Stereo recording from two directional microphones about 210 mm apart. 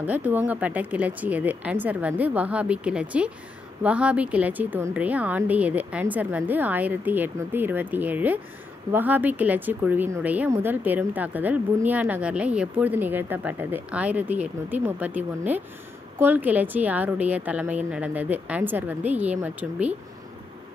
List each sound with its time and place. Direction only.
0.0 s a woman's voice: 10° right (ahead or behind)